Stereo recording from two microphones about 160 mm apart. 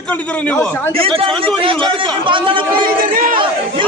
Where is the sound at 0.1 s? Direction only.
10° left (ahead or behind).